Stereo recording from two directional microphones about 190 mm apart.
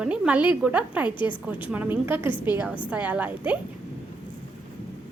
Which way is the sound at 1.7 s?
10° right (ahead or behind).